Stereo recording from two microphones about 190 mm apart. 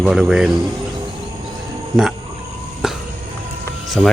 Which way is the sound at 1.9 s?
20° right (ahead or behind).